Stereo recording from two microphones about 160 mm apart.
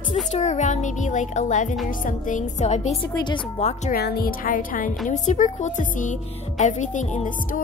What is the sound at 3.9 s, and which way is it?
A woman's voice, 75° left (ahead or behind).